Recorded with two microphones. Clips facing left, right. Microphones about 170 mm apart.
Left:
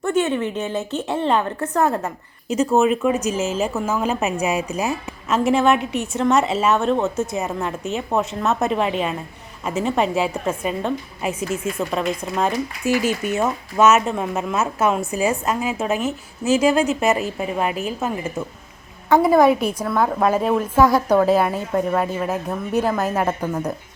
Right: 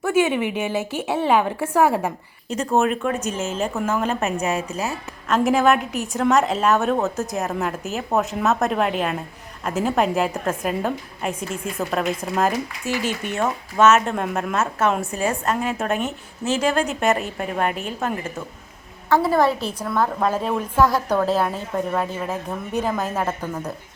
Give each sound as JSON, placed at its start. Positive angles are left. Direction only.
{"t": 0.0, "sound": "a woman's voice", "side_deg": -10}
{"t": 2.5, "sound": "a woman's voice", "side_deg": 5}
{"t": 12.9, "sound": "speech", "side_deg": 45}
{"t": 13.2, "sound": "a woman's voice", "side_deg": 5}
{"t": 19.1, "sound": "a woman's voice", "side_deg": 15}